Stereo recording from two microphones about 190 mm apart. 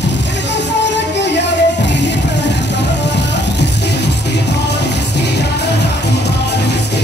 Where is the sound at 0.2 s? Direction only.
65° left (ahead or behind).